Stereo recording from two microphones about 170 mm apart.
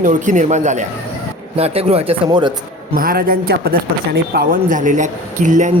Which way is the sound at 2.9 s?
60° right (ahead or behind).